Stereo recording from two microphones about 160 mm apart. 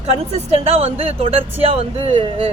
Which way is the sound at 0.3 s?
40° right (ahead or behind).